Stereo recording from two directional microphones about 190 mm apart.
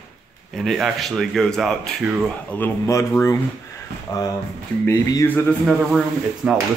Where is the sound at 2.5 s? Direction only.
15° left (ahead or behind).